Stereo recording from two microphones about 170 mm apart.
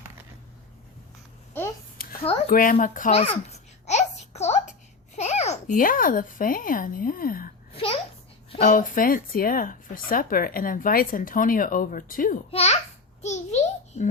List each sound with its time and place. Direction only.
1.5 s a sound: 10° left (ahead or behind)
2.0 s a sound: 60° left (ahead or behind)
2.5 s speech: 55° left (ahead or behind)
3.1 s a child's voice: 35° left (ahead or behind)
3.8 s a sound: 40° left (ahead or behind)
5.1 s a child's voice: 40° left (ahead or behind); by 7.5 s 55° left (ahead or behind)
8.6 s speech: 50° left (ahead or behind)
12.5 s a child's voice: 35° left (ahead or behind)
13.2 s babbling: 40° left (ahead or behind)